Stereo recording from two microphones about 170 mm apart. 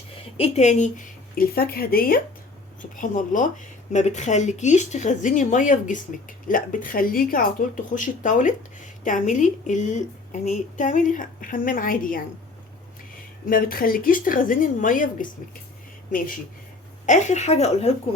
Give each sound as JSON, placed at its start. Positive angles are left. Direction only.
{"t": 0.3, "sound": "speech", "side_deg": 35}
{"t": 13.5, "sound": "a woman's voice", "side_deg": 60}